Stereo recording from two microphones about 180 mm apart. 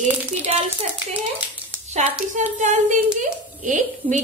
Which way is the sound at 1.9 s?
40° right (ahead or behind).